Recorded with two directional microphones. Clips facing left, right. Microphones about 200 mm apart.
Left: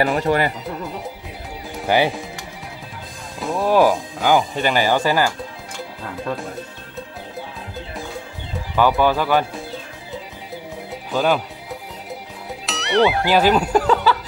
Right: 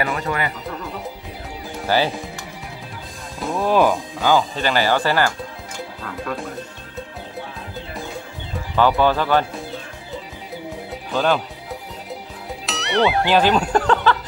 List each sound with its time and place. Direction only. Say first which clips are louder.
0.0 s speech: left 5 dB; 35° left (ahead or behind)
1.9 s speech: left 2 dB; 15° left (ahead or behind)
3.3 s speech: left 1 dB; centre (ahead or behind)
4.2 s speech: left 1 dB; 15° left (ahead or behind)
8.7 s speech: even; 10° left (ahead or behind)
11.1 s speech: left 1 dB; 10° left (ahead or behind)
12.6 s speech: left 2 dB; centre (ahead or behind)